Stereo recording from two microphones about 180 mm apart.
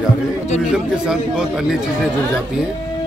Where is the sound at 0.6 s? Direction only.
5° right (ahead or behind).